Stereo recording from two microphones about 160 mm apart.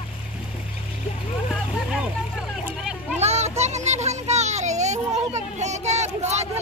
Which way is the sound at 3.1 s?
45° right (ahead or behind).